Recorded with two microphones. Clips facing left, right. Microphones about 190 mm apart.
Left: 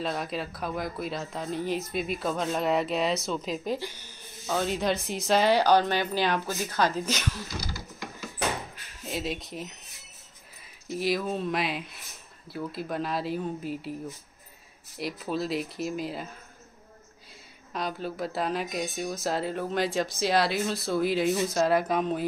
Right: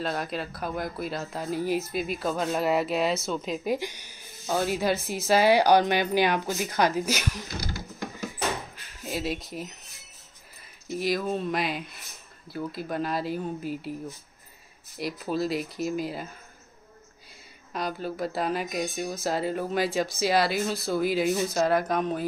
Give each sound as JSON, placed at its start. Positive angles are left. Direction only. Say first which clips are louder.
{"t": 0.0, "sound": "a woman's voice", "louder": "right 1 dB", "side_deg": 0}
{"t": 3.7, "sound": "speech", "louder": "right 3 dB", "side_deg": -15}
{"t": 7.6, "sound": "a sound", "louder": "right 3 dB", "side_deg": -55}
{"t": 9.0, "sound": "a woman's voice", "louder": "right 2 dB", "side_deg": -5}
{"t": 15.0, "sound": "a woman's voice", "louder": "right 2 dB", "side_deg": 0}
{"t": 17.7, "sound": "a woman's voice", "louder": "right 1 dB", "side_deg": 0}